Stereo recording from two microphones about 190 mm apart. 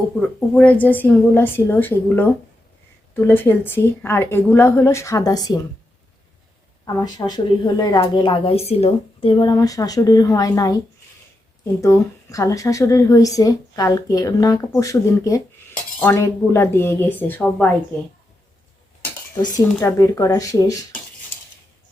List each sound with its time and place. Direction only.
0.2 s speech: 5° left (ahead or behind)
6.8 s a woman's voice: 20° left (ahead or behind)
19.5 s speech: 15° left (ahead or behind)